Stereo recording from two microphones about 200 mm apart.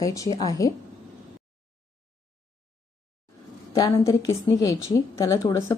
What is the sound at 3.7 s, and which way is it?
A woman's voice, 20° left (ahead or behind).